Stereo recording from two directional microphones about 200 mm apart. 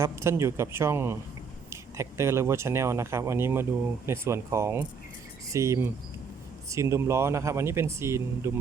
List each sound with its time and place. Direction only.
0.0 s speech: 15° right (ahead or behind)
5.5 s cricket: 15° right (ahead or behind)
6.7 s speech: 15° right (ahead or behind)